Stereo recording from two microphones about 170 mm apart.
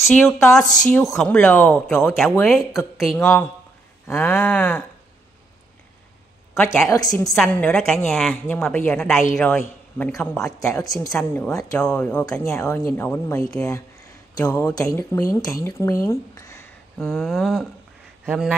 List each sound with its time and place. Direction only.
0.1 s a woman's voice: 10° left (ahead or behind)
2.6 s speech: 15° left (ahead or behind)
3.0 s a woman's voice: centre (ahead or behind)
6.5 s a woman's voice: 5° left (ahead or behind)
10.7 s a woman's voice: 20° left (ahead or behind)
17.0 s a woman's voice: centre (ahead or behind)